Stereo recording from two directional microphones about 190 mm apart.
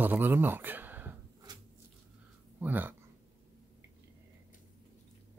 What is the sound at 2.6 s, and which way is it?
Speech, 10° right (ahead or behind).